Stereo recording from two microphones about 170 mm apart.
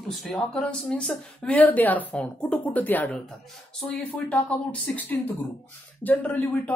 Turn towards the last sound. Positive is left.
turn(degrees=10)  # may be behind; listen again after turning